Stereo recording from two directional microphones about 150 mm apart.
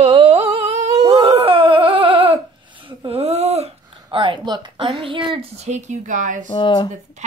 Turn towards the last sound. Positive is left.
turn(degrees=30)  # may be behind; listen again after turning